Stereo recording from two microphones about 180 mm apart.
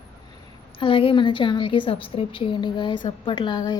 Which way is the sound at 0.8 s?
30° left (ahead or behind).